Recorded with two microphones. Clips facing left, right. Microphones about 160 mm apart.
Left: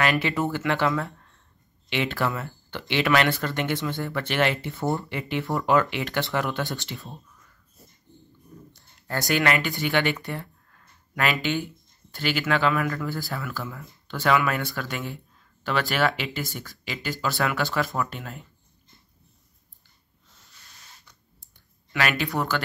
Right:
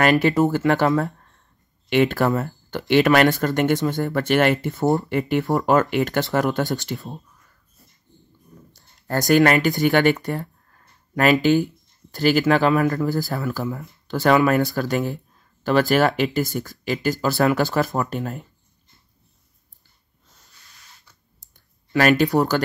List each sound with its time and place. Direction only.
0.0 s speech: 45° right (ahead or behind)
9.0 s speech: 40° right (ahead or behind)
21.9 s speech: 40° right (ahead or behind)